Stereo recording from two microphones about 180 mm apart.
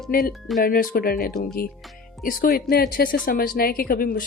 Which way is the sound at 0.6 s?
55° left (ahead or behind).